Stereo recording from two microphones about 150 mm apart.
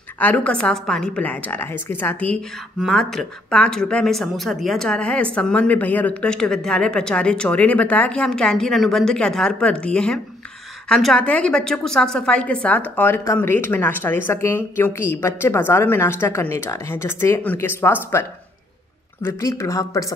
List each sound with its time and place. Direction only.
0.2 s a woman's voice: 10° left (ahead or behind)
19.2 s speech: 20° left (ahead or behind)